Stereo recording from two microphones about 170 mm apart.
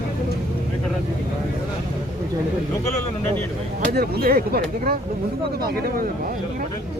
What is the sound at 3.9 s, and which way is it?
Speech, 65° right (ahead or behind).